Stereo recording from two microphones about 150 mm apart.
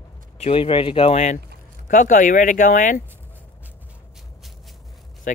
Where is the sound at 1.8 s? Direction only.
60° left (ahead or behind).